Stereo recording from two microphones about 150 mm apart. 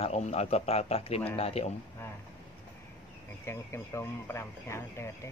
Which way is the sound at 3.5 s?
15° left (ahead or behind).